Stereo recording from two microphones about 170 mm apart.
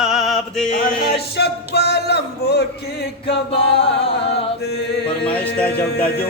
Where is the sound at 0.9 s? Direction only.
70° left (ahead or behind).